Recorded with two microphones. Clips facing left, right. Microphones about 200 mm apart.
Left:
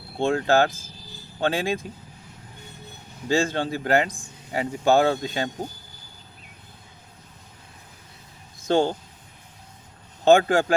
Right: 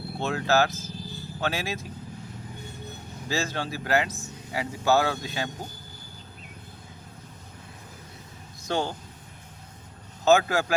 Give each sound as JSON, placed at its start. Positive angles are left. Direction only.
{"t": 0.2, "sound": "speech", "side_deg": 30}
{"t": 3.2, "sound": "speech", "side_deg": 30}
{"t": 8.7, "sound": "speech", "side_deg": 30}
{"t": 10.2, "sound": "speech", "side_deg": 30}